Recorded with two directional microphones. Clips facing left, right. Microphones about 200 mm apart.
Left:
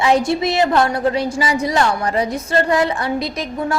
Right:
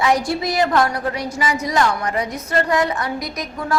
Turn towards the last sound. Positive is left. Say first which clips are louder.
# left 2 dB
turn(degrees=25)  # may be behind; listen again after turning